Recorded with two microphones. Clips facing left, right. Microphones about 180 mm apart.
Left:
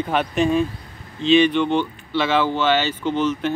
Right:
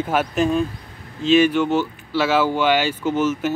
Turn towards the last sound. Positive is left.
turn(degrees=-10)  # may be behind; listen again after turning